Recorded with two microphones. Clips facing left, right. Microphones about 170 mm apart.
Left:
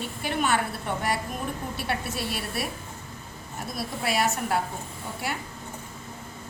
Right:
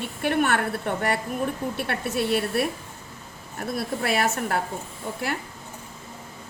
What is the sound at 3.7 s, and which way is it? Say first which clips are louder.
Speech: right 3 dB; 55° right (ahead or behind).